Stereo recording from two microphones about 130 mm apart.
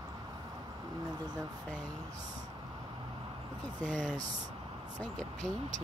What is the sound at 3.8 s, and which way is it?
Speech, 70° right (ahead or behind).